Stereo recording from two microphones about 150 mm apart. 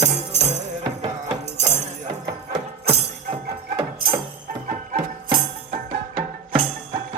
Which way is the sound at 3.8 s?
35° right (ahead or behind).